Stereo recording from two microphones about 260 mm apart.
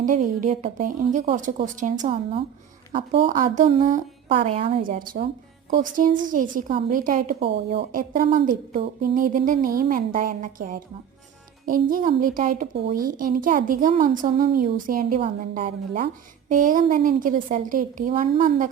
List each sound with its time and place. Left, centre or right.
0.0 s a woman's voice: right